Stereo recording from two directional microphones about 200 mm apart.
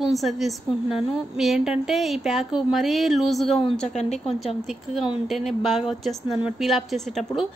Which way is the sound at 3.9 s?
35° left (ahead or behind).